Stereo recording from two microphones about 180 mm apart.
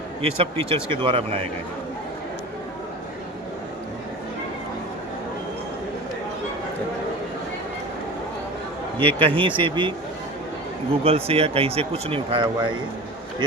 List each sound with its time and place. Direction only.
0.2 s speech: 30° right (ahead or behind)
9.0 s speech: 30° right (ahead or behind)
11.0 s speech: 35° right (ahead or behind)